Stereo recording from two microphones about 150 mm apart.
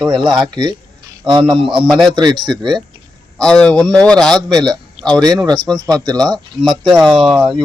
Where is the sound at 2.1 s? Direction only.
30° right (ahead or behind).